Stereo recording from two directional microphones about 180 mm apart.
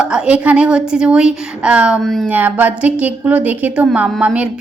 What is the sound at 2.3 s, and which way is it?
A woman's voice, 10° right (ahead or behind).